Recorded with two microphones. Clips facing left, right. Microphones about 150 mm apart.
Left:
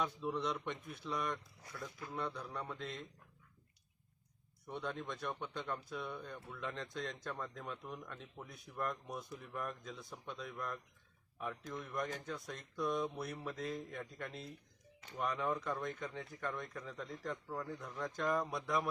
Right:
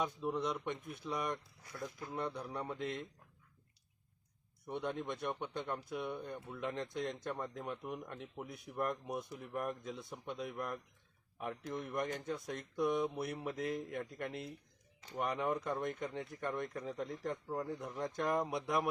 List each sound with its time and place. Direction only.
0.0 s speech: 10° right (ahead or behind)
4.6 s speech: 15° right (ahead or behind)
15.0 s speech: 40° right (ahead or behind)
15.3 s speech: 20° right (ahead or behind)